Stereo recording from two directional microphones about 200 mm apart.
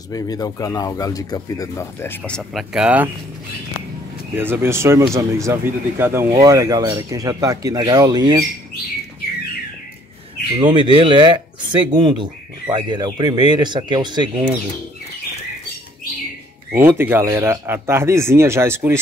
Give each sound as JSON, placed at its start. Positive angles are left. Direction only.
{"t": 0.1, "sound": "speech", "side_deg": 20}
{"t": 4.4, "sound": "speech", "side_deg": -10}
{"t": 10.6, "sound": "speech", "side_deg": -25}
{"t": 16.7, "sound": "speech", "side_deg": -10}